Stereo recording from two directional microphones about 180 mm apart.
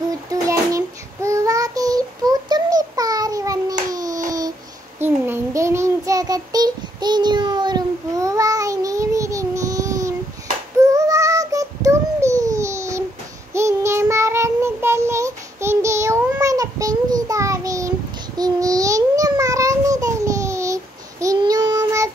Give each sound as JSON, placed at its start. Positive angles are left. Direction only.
{"t": 0.1, "sound": "child singing", "side_deg": -20}